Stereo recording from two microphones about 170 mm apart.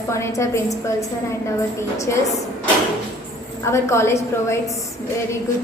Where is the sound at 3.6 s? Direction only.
15° left (ahead or behind).